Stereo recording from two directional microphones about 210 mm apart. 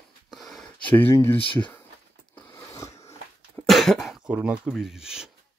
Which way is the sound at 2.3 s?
10° left (ahead or behind).